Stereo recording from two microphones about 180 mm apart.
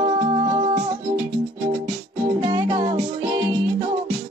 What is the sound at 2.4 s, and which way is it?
Music, 25° right (ahead or behind).